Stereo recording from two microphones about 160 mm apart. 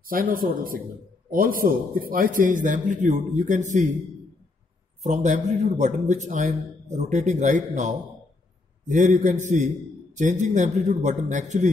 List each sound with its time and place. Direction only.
0.0 s a man's voice: 65° right (ahead or behind)
5.0 s a man's voice: 50° right (ahead or behind)